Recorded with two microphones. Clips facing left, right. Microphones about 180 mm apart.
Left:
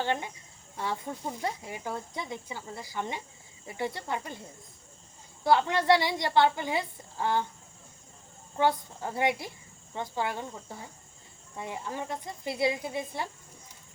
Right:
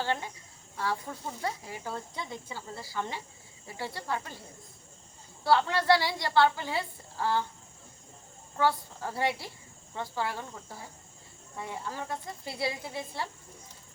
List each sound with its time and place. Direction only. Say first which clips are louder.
0.0 s speech: left 2 dB; 20° left (ahead or behind)
5.4 s speech: left 1 dB; 20° left (ahead or behind)
8.5 s speech: left 1 dB; 20° left (ahead or behind)
11.5 s speech: left 2 dB; 20° left (ahead or behind)